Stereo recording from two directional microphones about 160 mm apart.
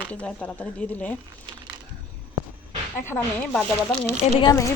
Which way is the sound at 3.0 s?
10° left (ahead or behind).